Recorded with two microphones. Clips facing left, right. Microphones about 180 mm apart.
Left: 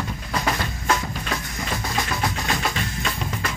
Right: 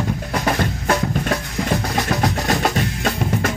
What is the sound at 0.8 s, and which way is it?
Music, 55° right (ahead or behind).